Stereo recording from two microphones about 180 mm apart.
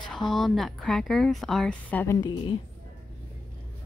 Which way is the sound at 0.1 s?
Centre (ahead or behind).